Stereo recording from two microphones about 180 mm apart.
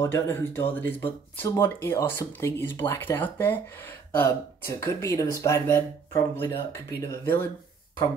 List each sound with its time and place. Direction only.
0.0 s speech: 15° left (ahead or behind)